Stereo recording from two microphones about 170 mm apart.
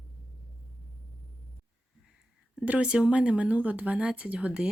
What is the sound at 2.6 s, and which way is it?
Speech, 5° right (ahead or behind).